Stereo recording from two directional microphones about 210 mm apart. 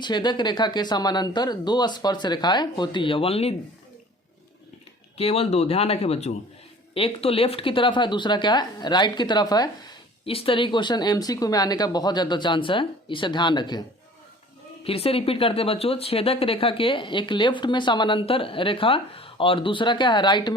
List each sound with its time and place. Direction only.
0.0 s speech: 20° left (ahead or behind)
5.1 s speech: 30° left (ahead or behind)
14.8 s speech: 25° left (ahead or behind)